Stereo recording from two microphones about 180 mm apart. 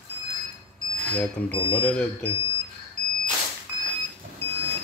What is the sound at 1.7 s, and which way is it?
Speech, 5° left (ahead or behind).